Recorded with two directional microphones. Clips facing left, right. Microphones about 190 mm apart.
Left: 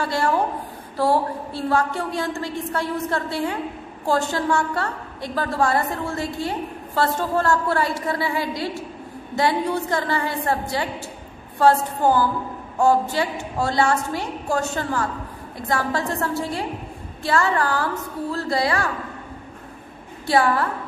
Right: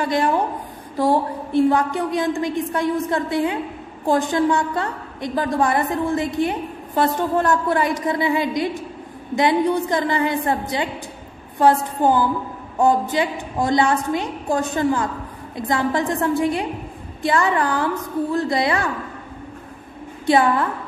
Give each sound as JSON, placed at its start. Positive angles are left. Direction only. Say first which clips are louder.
{"t": 0.0, "sound": "a woman's voice", "louder": "right 2 dB", "side_deg": -20}
{"t": 20.2, "sound": "a woman's voice", "louder": "right 2 dB", "side_deg": -20}